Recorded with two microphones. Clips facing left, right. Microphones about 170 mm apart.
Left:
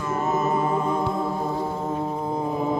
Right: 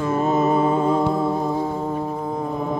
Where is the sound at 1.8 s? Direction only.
Centre (ahead or behind).